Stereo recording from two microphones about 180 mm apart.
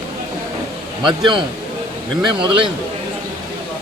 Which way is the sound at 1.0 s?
25° right (ahead or behind).